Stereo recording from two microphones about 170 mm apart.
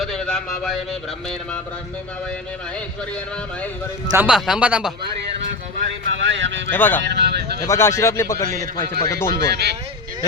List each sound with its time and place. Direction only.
0.0 s speech: 5° left (ahead or behind)
4.2 s speech: 5° right (ahead or behind)
6.2 s speech: 90° right
6.7 s speech: 10° left (ahead or behind)
7.0 s speech: 80° right
7.6 s speech: 15° left (ahead or behind)
9.3 s speech: 75° right (ahead or behind)